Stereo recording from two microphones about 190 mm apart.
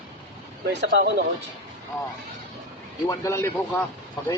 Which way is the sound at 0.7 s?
65° right (ahead or behind).